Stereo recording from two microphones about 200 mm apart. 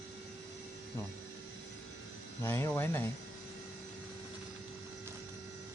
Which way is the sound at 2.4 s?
10° left (ahead or behind).